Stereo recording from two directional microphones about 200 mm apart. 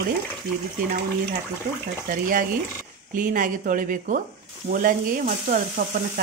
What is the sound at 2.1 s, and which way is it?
Speech, 45° right (ahead or behind).